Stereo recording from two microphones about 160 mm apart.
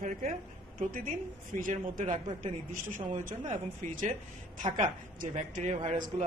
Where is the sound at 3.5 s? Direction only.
45° right (ahead or behind).